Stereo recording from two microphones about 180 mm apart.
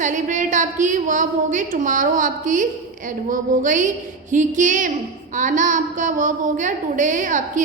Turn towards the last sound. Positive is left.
turn(degrees=-45)  # may be behind; listen again after turning